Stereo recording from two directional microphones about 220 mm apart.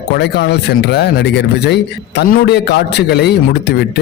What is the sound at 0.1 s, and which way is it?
A man's voice, 45° left (ahead or behind).